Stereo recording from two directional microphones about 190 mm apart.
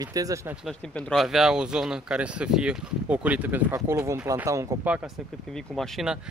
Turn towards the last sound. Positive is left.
turn(degrees=0)  # may be behind; listen again after turning